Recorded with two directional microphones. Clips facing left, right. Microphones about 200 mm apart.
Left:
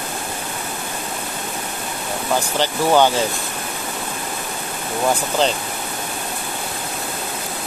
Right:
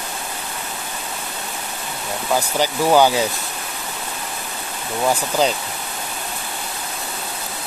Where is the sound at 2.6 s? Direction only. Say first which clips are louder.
Right 1 dB; 10° right (ahead or behind).